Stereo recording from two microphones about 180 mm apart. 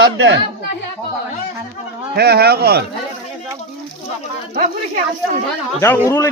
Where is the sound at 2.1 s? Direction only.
60° right (ahead or behind).